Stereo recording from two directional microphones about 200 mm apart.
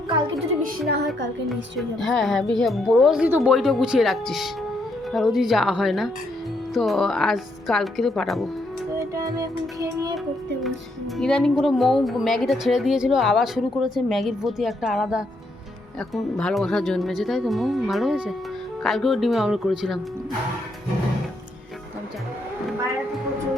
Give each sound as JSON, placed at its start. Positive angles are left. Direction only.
{"t": 0.1, "sound": "music", "side_deg": -25}
{"t": 2.0, "sound": "a woman's voice", "side_deg": 0}
{"t": 9.0, "sound": "music", "side_deg": -15}
{"t": 11.2, "sound": "a woman's voice", "side_deg": 0}